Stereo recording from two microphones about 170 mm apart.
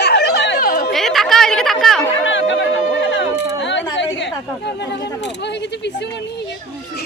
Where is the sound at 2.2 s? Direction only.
90° left.